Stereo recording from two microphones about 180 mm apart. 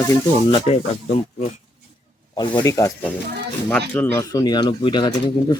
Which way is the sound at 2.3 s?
20° left (ahead or behind).